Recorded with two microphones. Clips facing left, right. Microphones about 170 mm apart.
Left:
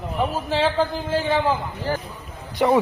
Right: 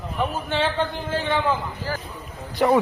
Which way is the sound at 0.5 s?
30° left (ahead or behind).